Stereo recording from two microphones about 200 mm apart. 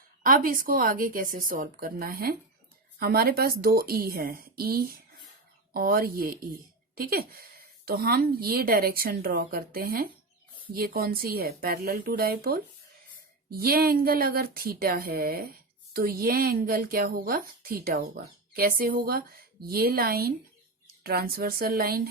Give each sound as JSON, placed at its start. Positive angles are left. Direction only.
{"t": 0.2, "sound": "speech", "side_deg": -45}